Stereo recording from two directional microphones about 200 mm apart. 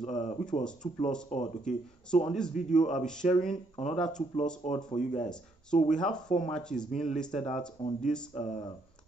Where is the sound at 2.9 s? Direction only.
5° left (ahead or behind).